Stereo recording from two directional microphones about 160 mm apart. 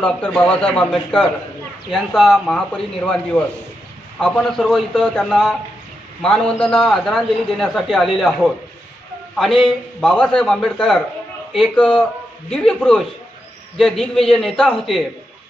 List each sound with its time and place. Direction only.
0.0 s a man's voice: 5° left (ahead or behind)
4.2 s a man's voice: 5° left (ahead or behind)